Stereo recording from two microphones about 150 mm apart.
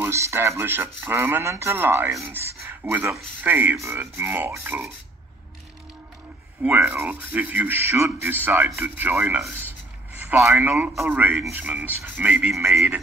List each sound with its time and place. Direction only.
0.0 s speech: 20° right (ahead or behind)
6.6 s speech: 10° right (ahead or behind)